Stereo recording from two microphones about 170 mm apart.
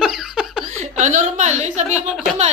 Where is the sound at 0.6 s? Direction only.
45° right (ahead or behind).